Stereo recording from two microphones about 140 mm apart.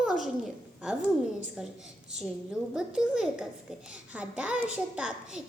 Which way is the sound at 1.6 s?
5° right (ahead or behind).